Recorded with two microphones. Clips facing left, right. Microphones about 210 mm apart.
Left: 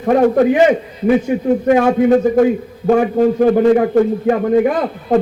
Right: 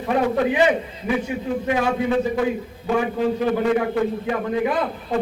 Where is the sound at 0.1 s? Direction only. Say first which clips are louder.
Left 9 dB; 45° left (ahead or behind).